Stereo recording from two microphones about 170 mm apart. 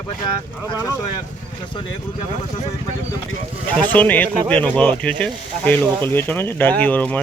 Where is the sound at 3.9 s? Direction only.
10° left (ahead or behind).